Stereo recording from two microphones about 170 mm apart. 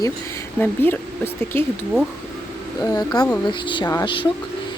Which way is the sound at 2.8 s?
20° left (ahead or behind).